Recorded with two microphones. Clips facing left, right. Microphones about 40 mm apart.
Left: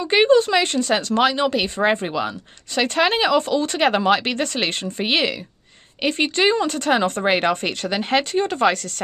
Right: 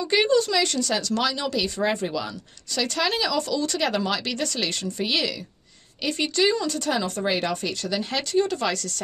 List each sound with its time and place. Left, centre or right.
0.0 s speech: left